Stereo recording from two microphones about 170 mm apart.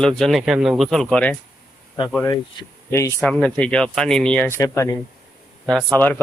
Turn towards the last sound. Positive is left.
turn(degrees=10)  # may be behind; listen again after turning